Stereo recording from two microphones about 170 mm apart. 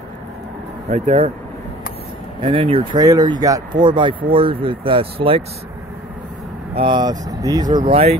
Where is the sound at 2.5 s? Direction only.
35° right (ahead or behind).